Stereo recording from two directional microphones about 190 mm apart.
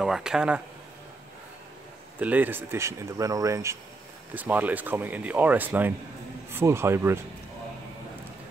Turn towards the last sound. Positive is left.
turn(degrees=-15)  # may be behind; listen again after turning